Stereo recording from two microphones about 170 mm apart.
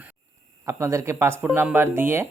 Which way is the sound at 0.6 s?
15° right (ahead or behind).